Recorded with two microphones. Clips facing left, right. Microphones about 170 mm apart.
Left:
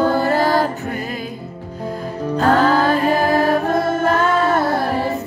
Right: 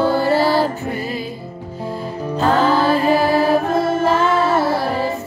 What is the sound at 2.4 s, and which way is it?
Music, 45° left (ahead or behind).